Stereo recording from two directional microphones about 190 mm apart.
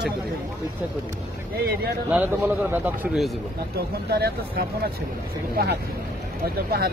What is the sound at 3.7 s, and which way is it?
Speech, 55° right (ahead or behind).